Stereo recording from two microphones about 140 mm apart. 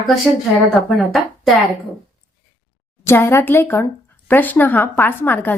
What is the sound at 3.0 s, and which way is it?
Speech, 15° left (ahead or behind).